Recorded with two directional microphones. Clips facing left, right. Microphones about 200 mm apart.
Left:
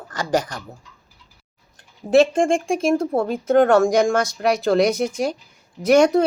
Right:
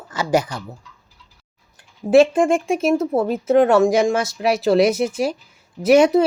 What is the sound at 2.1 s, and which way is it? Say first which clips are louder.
A woman's voice: right 2 dB; 5° right (ahead or behind).